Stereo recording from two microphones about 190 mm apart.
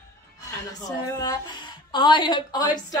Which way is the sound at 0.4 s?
20° left (ahead or behind).